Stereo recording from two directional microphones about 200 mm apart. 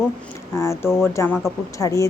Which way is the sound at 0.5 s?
15° left (ahead or behind).